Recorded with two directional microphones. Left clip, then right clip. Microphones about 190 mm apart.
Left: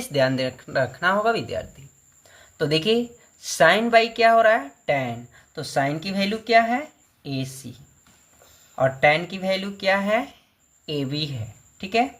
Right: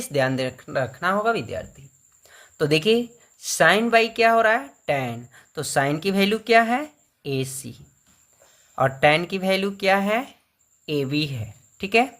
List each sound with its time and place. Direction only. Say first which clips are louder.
0.0 s speech: left 1 dB; 15° right (ahead or behind)
2.2 s speech: right 2 dB; 25° right (ahead or behind)